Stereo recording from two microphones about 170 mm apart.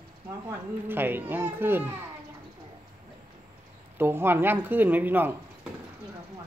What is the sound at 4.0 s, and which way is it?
Speech, 10° right (ahead or behind).